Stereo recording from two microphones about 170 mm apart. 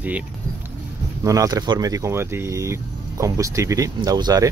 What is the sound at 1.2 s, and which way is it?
Speech, 20° right (ahead or behind).